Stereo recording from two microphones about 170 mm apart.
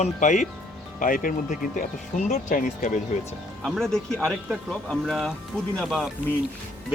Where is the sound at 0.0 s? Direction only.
45° left (ahead or behind).